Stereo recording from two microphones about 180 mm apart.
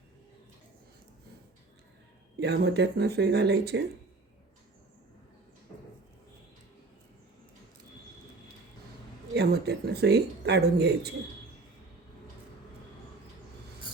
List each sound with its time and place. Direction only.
2.4 s speech: 70° right (ahead or behind)
9.3 s speech: 65° right (ahead or behind)